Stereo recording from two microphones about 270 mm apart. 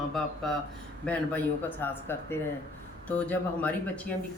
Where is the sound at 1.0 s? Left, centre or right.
Centre.